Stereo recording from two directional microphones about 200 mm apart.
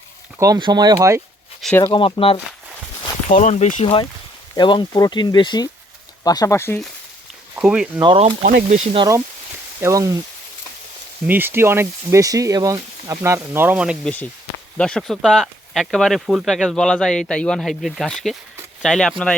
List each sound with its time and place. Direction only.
0.3 s speech: 15° right (ahead or behind)
1.6 s speech: 10° left (ahead or behind)
1.9 s speech: 25° left (ahead or behind)
3.2 s speech: 35° left (ahead or behind); by 6.7 s 15° left (ahead or behind)
7.5 s speech: 5° right (ahead or behind)
8.0 s speech: 25° right (ahead or behind)
8.4 s speech: 40° right (ahead or behind)
9.8 s speech: 15° right (ahead or behind)
11.3 s speech: 10° right (ahead or behind)